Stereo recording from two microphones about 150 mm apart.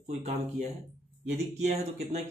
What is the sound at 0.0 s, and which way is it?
Speech, 45° right (ahead or behind).